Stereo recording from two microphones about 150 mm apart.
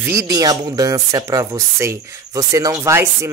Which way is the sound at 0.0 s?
20° right (ahead or behind).